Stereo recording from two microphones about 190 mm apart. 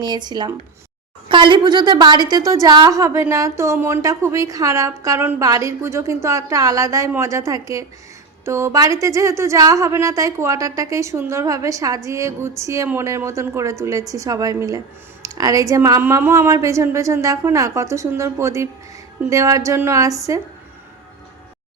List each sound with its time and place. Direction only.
0.0 s a woman's voice: 20° right (ahead or behind)